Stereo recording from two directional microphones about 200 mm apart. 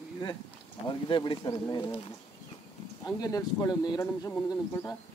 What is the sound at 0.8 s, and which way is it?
Speech, 25° left (ahead or behind).